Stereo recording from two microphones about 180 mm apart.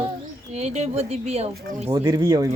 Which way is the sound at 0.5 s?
35° right (ahead or behind).